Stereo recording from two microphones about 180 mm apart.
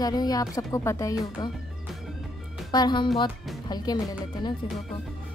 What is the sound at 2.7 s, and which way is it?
Speech, 25° left (ahead or behind).